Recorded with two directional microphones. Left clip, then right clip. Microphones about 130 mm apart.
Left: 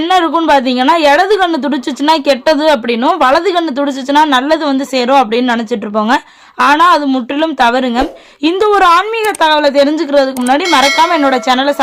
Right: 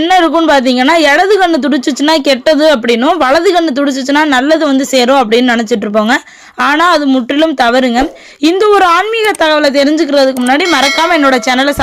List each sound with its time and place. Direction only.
0.1 s a woman's voice: 20° right (ahead or behind)
6.6 s a woman's voice: 25° right (ahead or behind)